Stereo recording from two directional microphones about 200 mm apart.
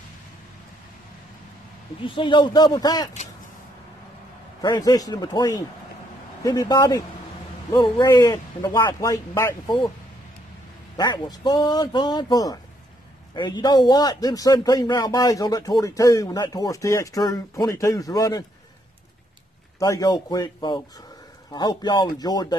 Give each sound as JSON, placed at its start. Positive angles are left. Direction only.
{"t": 2.0, "sound": "speech", "side_deg": 25}
{"t": 4.6, "sound": "a man's voice", "side_deg": 20}
{"t": 11.0, "sound": "speech", "side_deg": 20}
{"t": 19.8, "sound": "speech", "side_deg": 15}